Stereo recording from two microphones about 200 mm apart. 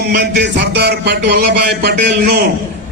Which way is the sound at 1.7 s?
55° right (ahead or behind).